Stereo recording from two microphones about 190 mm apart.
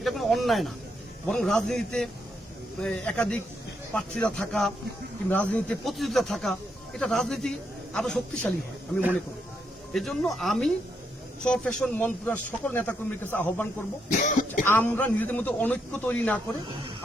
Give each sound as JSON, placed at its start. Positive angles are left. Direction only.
{"t": 0.0, "sound": "snake", "side_deg": 0}
{"t": 1.3, "sound": "speech", "side_deg": 5}
{"t": 9.9, "sound": "speech", "side_deg": 0}
{"t": 14.1, "sound": "speech", "side_deg": 40}
{"t": 14.6, "sound": "speech", "side_deg": 10}